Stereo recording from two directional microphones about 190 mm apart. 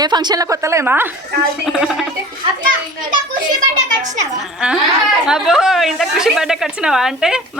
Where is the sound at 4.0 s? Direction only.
40° right (ahead or behind).